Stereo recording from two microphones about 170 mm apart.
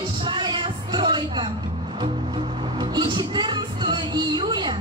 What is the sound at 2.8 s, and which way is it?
Music, 25° right (ahead or behind).